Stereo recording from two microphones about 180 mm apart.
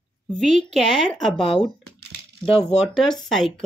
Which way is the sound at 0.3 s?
Centre (ahead or behind).